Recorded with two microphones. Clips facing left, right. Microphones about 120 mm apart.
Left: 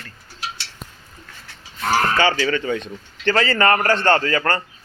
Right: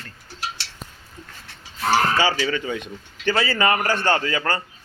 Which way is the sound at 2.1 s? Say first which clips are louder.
Left 2 dB; 10° right (ahead or behind).